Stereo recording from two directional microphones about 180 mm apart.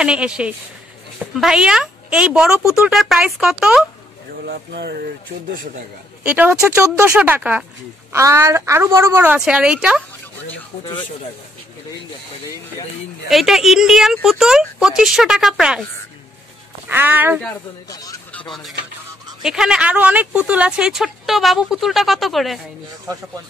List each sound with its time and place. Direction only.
0.0 s speech: 5° right (ahead or behind)
4.5 s a sound: 65° right (ahead or behind)
6.2 s a woman's voice: 10° right (ahead or behind)
13.3 s speech: centre (ahead or behind)
16.9 s a woman's voice: 10° right (ahead or behind)
17.8 s speech: 20° left (ahead or behind)
18.5 s speech: centre (ahead or behind)